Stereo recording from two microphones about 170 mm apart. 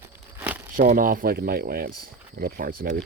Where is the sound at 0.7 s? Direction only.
55° right (ahead or behind).